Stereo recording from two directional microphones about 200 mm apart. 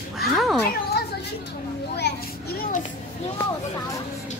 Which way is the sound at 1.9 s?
55° left (ahead or behind).